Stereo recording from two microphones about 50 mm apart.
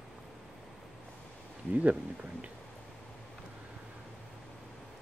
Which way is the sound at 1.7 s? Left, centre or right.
Right.